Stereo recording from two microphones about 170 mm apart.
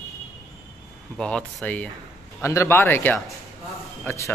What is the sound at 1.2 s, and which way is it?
A man's voice, 5° left (ahead or behind).